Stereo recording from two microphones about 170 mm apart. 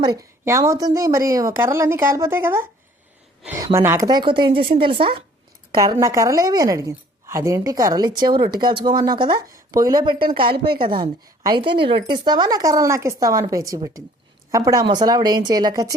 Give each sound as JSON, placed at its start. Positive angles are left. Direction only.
{"t": 0.0, "sound": "a woman's voice", "side_deg": -20}